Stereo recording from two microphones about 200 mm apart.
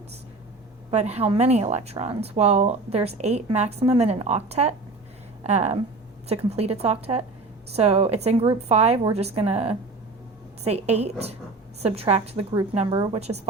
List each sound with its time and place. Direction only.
0.9 s speech: 30° right (ahead or behind)